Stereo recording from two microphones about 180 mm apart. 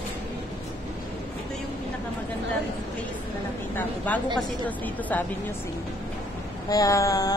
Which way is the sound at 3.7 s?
10° left (ahead or behind).